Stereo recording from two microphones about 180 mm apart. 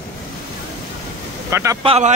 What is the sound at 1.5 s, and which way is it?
Speech, 15° right (ahead or behind).